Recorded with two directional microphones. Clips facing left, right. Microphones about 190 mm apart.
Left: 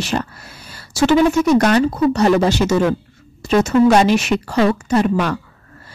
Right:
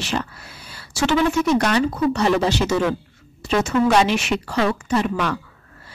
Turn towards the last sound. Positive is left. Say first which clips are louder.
# left 5 dB
turn(degrees=40)  # may be behind; listen again after turning